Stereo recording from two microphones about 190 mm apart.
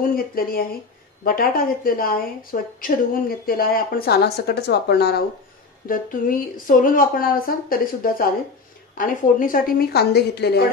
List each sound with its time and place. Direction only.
0.0 s speech: 50° left (ahead or behind)
5.9 s speech: 45° left (ahead or behind)